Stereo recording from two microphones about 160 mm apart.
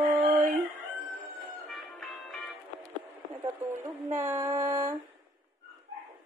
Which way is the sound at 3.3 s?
15° right (ahead or behind).